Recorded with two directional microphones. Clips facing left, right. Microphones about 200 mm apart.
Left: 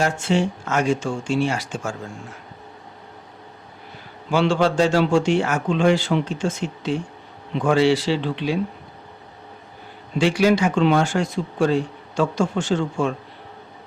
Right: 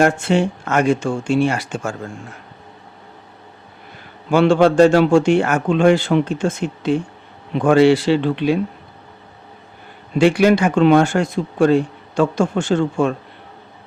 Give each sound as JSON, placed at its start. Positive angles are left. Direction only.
{"t": 0.0, "sound": "speech", "side_deg": -60}
{"t": 4.3, "sound": "speech", "side_deg": -55}
{"t": 10.2, "sound": "speech", "side_deg": -55}